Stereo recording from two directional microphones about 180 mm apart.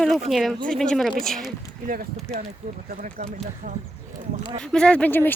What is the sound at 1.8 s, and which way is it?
Speech, 50° right (ahead or behind).